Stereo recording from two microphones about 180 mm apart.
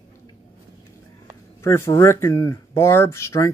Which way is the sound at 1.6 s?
15° left (ahead or behind).